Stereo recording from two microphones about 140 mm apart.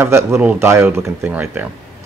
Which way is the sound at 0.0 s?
15° right (ahead or behind).